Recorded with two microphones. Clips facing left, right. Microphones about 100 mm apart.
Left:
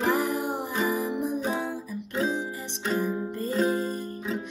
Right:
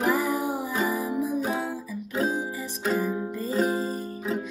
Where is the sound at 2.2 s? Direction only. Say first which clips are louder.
Right 1 dB; 40° right (ahead or behind).